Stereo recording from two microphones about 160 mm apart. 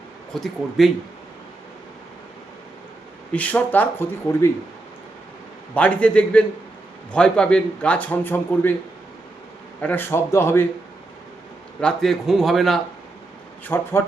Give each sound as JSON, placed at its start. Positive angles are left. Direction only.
{"t": 0.3, "sound": "a man's voice", "side_deg": 0}
{"t": 3.3, "sound": "a man's voice", "side_deg": 10}
{"t": 5.7, "sound": "a man's voice", "side_deg": 10}
{"t": 9.8, "sound": "a man's voice", "side_deg": 10}
{"t": 11.8, "sound": "a man's voice", "side_deg": 5}
{"t": 13.7, "sound": "a man's voice", "side_deg": 15}